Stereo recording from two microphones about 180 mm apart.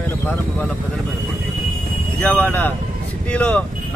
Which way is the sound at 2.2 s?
10° left (ahead or behind).